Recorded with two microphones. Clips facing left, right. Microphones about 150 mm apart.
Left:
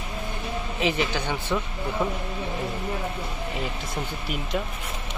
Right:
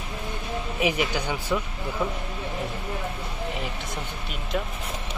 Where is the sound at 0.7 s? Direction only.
15° right (ahead or behind).